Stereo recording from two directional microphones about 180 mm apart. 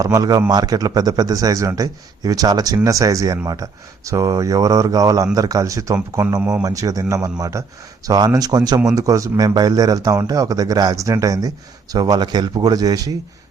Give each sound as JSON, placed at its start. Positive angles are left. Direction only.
{"t": 0.0, "sound": "a man's voice", "side_deg": -20}